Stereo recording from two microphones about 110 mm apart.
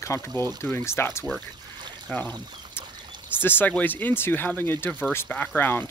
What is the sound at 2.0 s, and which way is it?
Pour, 15° left (ahead or behind).